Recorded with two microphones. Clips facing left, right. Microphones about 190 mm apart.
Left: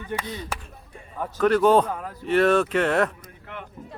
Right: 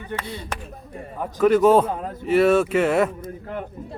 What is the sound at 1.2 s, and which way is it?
Speech, 5° right (ahead or behind).